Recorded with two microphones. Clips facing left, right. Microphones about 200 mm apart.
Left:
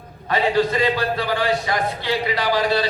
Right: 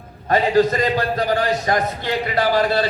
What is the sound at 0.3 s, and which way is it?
A man's voice, 45° right (ahead or behind).